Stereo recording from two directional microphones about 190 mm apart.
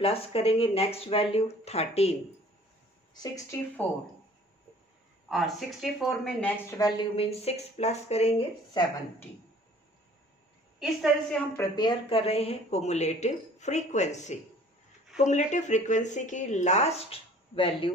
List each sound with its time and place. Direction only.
0.0 s speech: 30° left (ahead or behind)
5.3 s speech: centre (ahead or behind); by 7.1 s 15° left (ahead or behind)
7.2 s speech: 35° left (ahead or behind)
10.8 s speech: centre (ahead or behind)
11.5 s speech: 20° left (ahead or behind)